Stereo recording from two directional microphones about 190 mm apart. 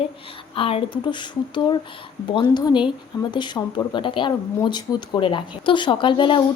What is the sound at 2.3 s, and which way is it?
Speech, 25° left (ahead or behind).